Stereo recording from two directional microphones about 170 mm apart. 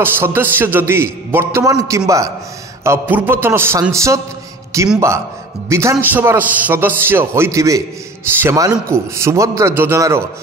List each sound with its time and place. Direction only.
0.0 s a man's voice: 15° right (ahead or behind)